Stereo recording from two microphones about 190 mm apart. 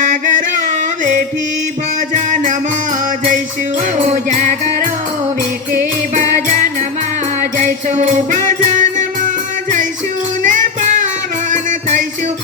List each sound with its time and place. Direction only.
0.1 s music: 40° right (ahead or behind)
2.1 s music: 40° right (ahead or behind)
3.9 s music: 40° right (ahead or behind)
7.6 s music: 40° right (ahead or behind)
11.5 s music: 40° right (ahead or behind)